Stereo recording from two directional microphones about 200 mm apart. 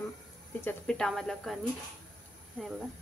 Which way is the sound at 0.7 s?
5° left (ahead or behind).